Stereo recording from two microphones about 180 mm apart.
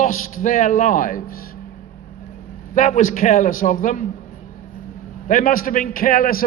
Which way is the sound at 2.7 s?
45° left (ahead or behind).